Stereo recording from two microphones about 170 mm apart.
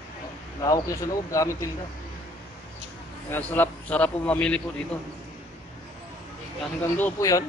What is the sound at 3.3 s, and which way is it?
A man's voice, 10° left (ahead or behind).